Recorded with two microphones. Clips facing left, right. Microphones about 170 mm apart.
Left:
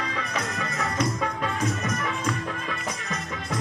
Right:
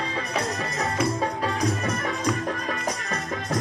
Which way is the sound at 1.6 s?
35° right (ahead or behind).